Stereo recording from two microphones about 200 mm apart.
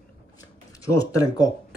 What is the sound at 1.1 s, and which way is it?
Speech, 20° left (ahead or behind).